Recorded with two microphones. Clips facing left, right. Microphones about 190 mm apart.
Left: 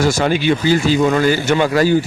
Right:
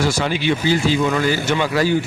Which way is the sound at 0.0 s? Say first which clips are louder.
Left 4 dB; 45° left (ahead or behind).